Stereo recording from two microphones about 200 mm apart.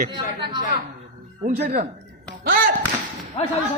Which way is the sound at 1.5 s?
40° right (ahead or behind).